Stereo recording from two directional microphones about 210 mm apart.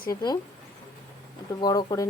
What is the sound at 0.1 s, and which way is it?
Speech, 20° left (ahead or behind).